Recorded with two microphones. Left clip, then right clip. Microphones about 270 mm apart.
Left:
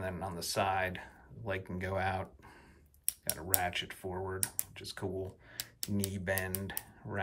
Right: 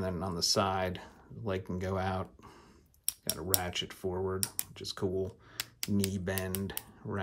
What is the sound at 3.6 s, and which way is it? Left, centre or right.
Speech, centre.